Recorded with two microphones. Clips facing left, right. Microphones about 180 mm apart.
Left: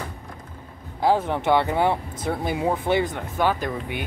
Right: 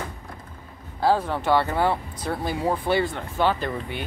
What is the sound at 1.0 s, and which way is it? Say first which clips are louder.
Speech: left 1 dB; 20° left (ahead or behind).